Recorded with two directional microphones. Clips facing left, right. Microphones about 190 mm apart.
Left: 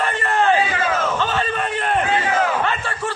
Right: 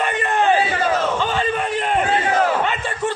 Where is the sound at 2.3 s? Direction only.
40° right (ahead or behind).